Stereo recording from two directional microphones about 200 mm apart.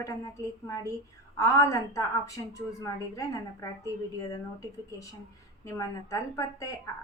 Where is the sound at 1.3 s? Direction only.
15° left (ahead or behind).